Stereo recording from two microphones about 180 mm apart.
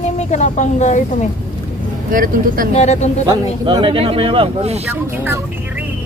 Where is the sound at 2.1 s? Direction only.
50° right (ahead or behind).